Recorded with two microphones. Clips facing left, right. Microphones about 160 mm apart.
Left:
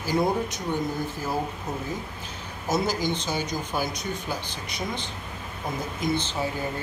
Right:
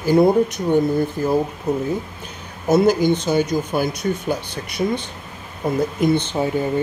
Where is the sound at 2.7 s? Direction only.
60° right (ahead or behind).